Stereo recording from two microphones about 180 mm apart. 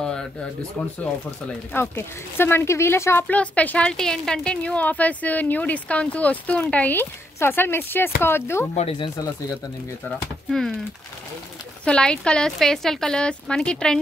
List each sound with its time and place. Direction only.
0.8 s speech: 5° left (ahead or behind)
8.7 s speech: 30° left (ahead or behind)
10.0 s speech: centre (ahead or behind)
11.8 s speech: 5° left (ahead or behind)